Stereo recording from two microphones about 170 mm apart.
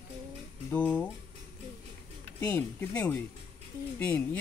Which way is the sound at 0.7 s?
10° left (ahead or behind).